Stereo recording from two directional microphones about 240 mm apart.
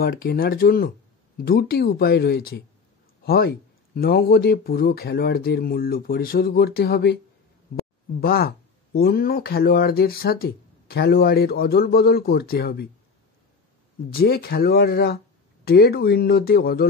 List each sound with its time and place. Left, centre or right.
0.0 s speech: left
8.2 s speech: left
14.1 s speech: left